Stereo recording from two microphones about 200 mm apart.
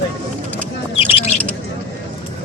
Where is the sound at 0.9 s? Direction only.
30° left (ahead or behind).